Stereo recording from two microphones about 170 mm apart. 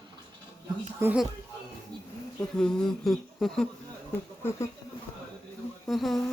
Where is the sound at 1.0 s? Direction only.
5° right (ahead or behind).